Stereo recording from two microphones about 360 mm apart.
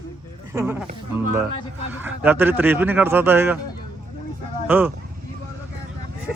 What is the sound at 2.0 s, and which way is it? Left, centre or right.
Speech, centre.